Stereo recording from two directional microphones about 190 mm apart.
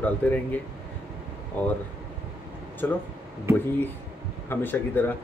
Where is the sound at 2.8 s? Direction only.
10° left (ahead or behind).